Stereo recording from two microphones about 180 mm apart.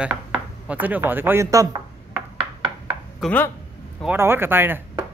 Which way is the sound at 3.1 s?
10° left (ahead or behind).